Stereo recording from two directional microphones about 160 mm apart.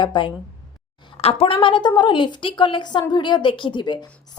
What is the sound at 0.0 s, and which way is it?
A woman's voice, 30° left (ahead or behind).